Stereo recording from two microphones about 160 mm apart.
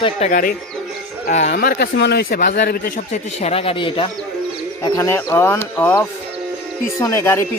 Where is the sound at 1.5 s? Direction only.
80° left.